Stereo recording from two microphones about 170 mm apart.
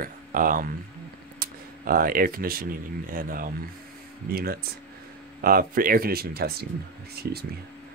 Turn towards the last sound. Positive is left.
turn(degrees=-70)  # may be behind; listen again after turning